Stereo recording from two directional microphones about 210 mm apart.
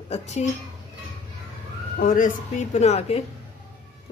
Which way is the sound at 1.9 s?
40° left (ahead or behind).